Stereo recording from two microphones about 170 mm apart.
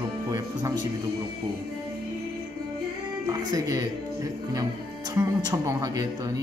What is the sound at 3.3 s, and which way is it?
Speech, 20° right (ahead or behind).